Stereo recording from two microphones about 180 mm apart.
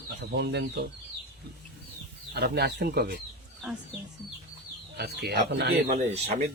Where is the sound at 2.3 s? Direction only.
65° right (ahead or behind).